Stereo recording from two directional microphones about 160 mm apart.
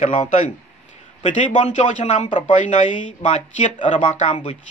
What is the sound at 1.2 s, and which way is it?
Speech, 50° left (ahead or behind).